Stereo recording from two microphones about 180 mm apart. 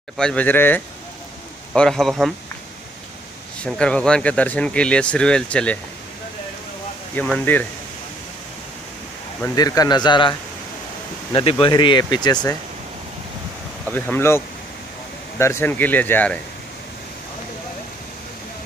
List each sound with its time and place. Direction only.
0.2 s a man's voice: 5° left (ahead or behind)
3.6 s speech: 5° left (ahead or behind)
7.2 s speech: 10° left (ahead or behind)
9.6 s speech: 20° left (ahead or behind)
11.6 s speech: 25° left (ahead or behind)
13.8 s speech: 10° left (ahead or behind)